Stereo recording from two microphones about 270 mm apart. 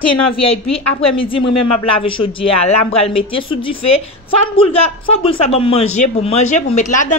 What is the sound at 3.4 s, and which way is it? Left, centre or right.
Speech, centre.